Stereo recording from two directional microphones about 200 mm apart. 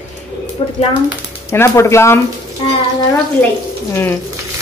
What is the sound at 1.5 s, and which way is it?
Speech, 15° left (ahead or behind).